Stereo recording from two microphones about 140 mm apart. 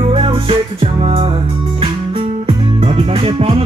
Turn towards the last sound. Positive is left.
turn(degrees=-45)  # may be behind; listen again after turning